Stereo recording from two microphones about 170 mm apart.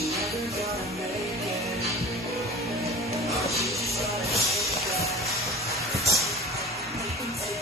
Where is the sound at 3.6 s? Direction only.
Centre (ahead or behind).